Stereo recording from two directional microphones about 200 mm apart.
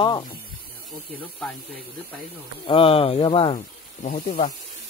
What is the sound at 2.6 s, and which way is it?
Speech, 30° left (ahead or behind).